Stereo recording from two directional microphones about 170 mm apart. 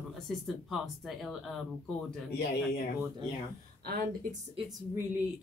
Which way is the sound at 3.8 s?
55° right (ahead or behind).